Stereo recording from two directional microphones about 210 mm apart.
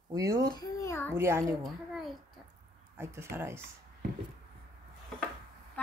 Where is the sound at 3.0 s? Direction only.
10° right (ahead or behind).